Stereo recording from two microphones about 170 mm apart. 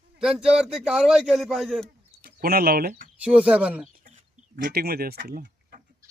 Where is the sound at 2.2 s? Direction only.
60° right (ahead or behind).